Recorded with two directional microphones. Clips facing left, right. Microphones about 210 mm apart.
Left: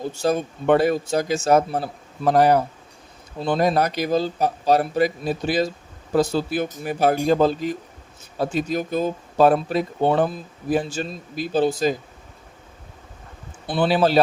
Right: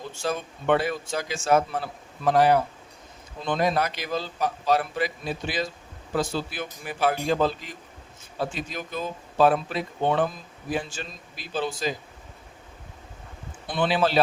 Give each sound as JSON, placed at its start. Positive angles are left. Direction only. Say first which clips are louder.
{"t": 0.0, "sound": "speech", "louder": "left 7 dB", "side_deg": 40}
{"t": 13.7, "sound": "speech", "louder": "left 5 dB", "side_deg": 40}